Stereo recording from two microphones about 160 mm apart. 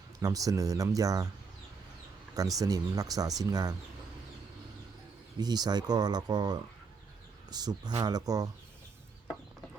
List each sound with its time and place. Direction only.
0.2 s speech: 20° right (ahead or behind)
2.6 s speech: 25° right (ahead or behind)
5.4 s speech: 25° right (ahead or behind)